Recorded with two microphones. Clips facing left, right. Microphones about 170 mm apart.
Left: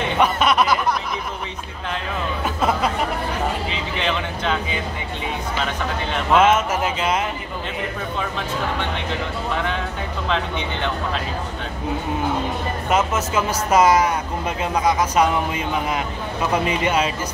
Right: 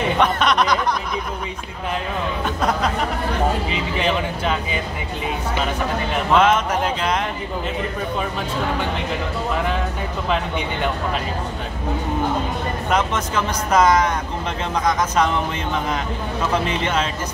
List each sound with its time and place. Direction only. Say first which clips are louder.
0.2 s music: left 2 dB; 5° left (ahead or behind)
2.4 s a sound: left 1 dB; 5° left (ahead or behind)
6.3 s speech: left 1 dB; 5° left (ahead or behind)
12.9 s speech: left 1 dB; 5° left (ahead or behind)